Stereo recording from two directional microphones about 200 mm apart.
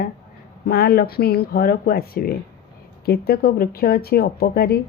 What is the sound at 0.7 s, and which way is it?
A woman's voice, 50° left (ahead or behind).